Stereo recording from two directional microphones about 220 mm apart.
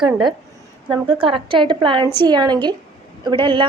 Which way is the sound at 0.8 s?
20° right (ahead or behind).